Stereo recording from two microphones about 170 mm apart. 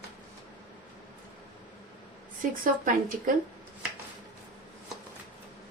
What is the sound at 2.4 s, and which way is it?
Speech, 50° right (ahead or behind).